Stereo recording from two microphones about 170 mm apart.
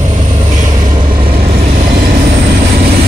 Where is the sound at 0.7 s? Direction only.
25° right (ahead or behind).